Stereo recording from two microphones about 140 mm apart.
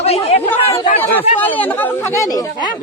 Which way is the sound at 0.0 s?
45° left (ahead or behind).